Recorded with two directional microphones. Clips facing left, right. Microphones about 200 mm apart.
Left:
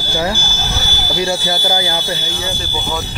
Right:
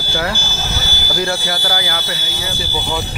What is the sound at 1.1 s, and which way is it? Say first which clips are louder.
Speech: left 2 dB; 20° left (ahead or behind).